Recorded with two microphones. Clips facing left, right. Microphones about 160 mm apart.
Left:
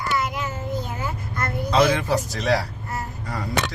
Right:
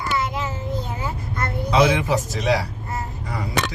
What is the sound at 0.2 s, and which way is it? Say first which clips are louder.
Child singing: right 1 dB; 30° right (ahead or behind).